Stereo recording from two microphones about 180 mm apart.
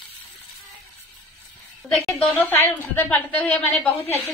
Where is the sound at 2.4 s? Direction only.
10° left (ahead or behind).